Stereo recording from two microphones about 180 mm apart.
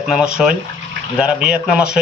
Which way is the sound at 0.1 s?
5° right (ahead or behind).